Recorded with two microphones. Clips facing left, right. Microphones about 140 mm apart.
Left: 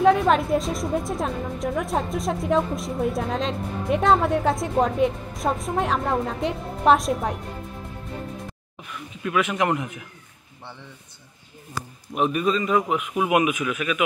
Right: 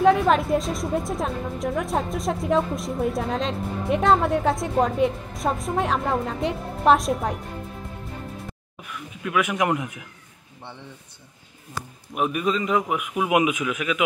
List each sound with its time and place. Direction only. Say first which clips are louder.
0.0 s a woman's voice: even; centre (ahead or behind)
9.2 s a man's voice: even; 10° right (ahead or behind)
12.2 s a man's voice: left 1 dB; 10° right (ahead or behind)